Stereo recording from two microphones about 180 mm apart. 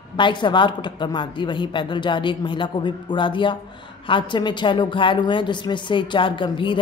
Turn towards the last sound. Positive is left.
turn(degrees=30)  # may be behind; listen again after turning